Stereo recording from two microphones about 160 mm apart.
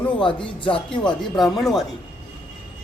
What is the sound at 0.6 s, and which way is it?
Chopping, 35° left (ahead or behind).